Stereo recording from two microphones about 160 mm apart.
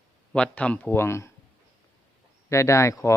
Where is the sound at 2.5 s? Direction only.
20° left (ahead or behind).